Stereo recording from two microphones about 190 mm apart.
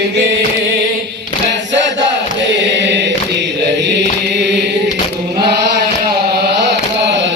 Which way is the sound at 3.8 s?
65° right (ahead or behind).